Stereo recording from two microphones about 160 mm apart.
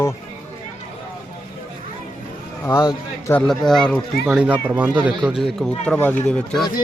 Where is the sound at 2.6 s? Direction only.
15° left (ahead or behind).